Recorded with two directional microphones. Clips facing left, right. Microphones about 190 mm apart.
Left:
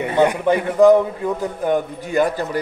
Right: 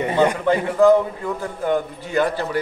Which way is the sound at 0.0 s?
15° left (ahead or behind).